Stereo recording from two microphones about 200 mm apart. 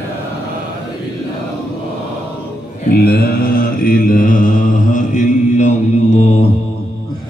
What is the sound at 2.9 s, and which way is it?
Mantra, 50° left (ahead or behind).